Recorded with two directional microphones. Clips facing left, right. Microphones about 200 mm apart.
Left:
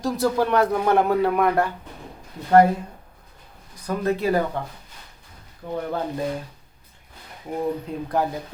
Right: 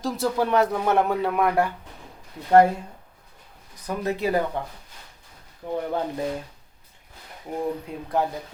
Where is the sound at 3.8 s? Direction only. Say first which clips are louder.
Left 3 dB; 15° right (ahead or behind).